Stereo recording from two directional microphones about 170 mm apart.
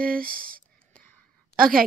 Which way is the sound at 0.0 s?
55° right (ahead or behind).